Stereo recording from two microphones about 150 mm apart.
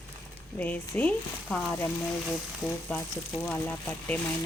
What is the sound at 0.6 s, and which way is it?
Speech, 10° left (ahead or behind).